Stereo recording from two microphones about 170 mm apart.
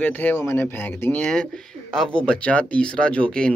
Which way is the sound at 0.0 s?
10° left (ahead or behind).